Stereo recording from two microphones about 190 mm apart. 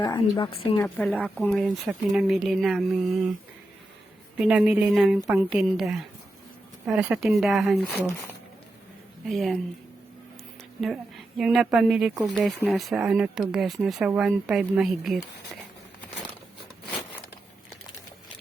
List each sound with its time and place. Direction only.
0.0 s a woman's voice: 25° left (ahead or behind)
0.8 s speech: 10° left (ahead or behind)
4.4 s speech: 5° right (ahead or behind)
9.2 s speech: centre (ahead or behind)
10.8 s a woman's voice: centre (ahead or behind)